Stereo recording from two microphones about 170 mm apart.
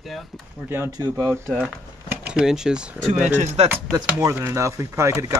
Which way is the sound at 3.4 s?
40° right (ahead or behind).